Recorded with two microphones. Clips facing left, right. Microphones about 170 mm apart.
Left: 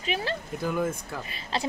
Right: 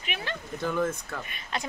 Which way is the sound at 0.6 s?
10° left (ahead or behind).